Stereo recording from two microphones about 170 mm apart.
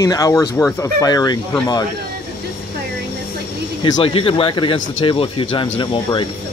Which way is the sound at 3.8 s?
30° left (ahead or behind).